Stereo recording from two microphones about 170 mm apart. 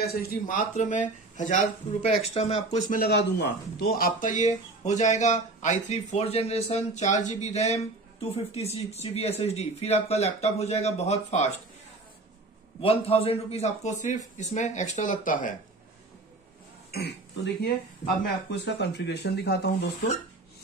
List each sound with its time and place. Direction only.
0.1 s speech: 55° left (ahead or behind); by 2.8 s 40° left (ahead or behind)
2.9 s speech: 65° left (ahead or behind); by 11.5 s 40° left (ahead or behind)
12.8 s speech: 35° left (ahead or behind); by 15.5 s 50° left (ahead or behind)
16.9 s speech: 75° left (ahead or behind)
18.2 s speech: 85° left